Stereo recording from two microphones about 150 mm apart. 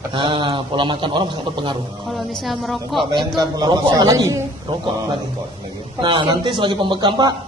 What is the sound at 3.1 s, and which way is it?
A man's voice, 25° right (ahead or behind).